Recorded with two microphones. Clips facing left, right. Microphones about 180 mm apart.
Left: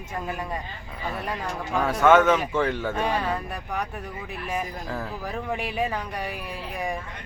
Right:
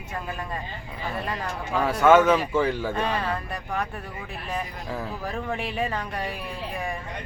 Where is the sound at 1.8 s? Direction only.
5° right (ahead or behind).